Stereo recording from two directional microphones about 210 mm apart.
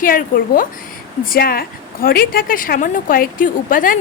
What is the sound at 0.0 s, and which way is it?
A woman's voice, 40° left (ahead or behind).